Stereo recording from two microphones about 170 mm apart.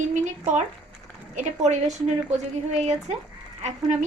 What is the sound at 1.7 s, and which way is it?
Speech, 45° right (ahead or behind).